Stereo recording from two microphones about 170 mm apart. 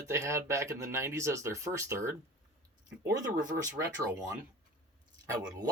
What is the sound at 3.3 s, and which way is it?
Speech, 50° right (ahead or behind).